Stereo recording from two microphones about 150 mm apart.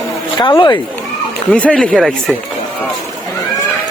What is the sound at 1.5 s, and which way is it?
Speech, 10° left (ahead or behind).